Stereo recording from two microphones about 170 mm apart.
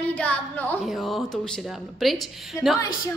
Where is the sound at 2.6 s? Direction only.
20° left (ahead or behind).